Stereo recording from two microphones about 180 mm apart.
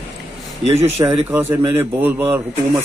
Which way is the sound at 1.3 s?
15° right (ahead or behind).